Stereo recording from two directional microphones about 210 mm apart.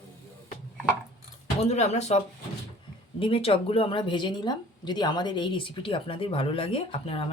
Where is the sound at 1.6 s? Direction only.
30° left (ahead or behind).